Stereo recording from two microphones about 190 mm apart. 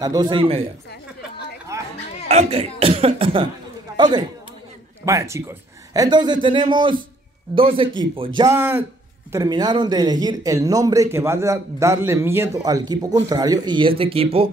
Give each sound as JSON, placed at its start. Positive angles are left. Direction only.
{"t": 0.0, "sound": "a man's voice", "side_deg": -20}
{"t": 2.2, "sound": "speech", "side_deg": -35}
{"t": 3.9, "sound": "chatter", "side_deg": -25}
{"t": 5.0, "sound": "a man's voice", "side_deg": -15}
{"t": 8.4, "sound": "a man's voice", "side_deg": -15}